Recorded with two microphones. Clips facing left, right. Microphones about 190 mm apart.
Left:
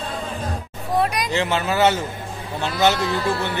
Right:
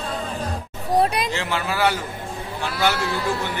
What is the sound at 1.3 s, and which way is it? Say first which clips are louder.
Speech: left 4 dB; 20° left (ahead or behind).